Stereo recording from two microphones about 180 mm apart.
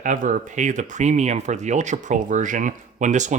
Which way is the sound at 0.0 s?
45° right (ahead or behind).